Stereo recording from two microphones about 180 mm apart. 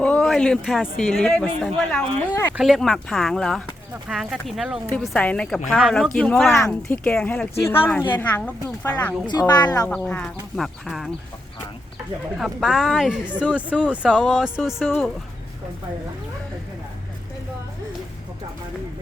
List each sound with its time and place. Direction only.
0.0 s speech: 5° left (ahead or behind)
9.2 s speech: 20° left (ahead or behind)
9.9 s speech: 5° left (ahead or behind)
12.4 s speech: centre (ahead or behind)